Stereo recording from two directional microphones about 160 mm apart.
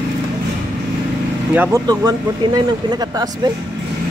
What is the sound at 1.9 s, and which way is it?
Speech, 25° right (ahead or behind).